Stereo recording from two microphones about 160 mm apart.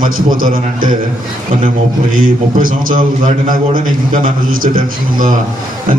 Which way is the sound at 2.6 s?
60° right (ahead or behind).